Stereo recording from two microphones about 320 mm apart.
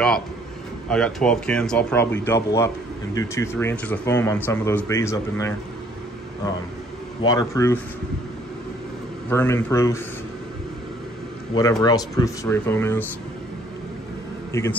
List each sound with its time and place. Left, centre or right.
0.8 s speech: centre
7.2 s speech: centre
9.3 s speech: centre
11.8 s speech: centre
14.5 s a man's voice: centre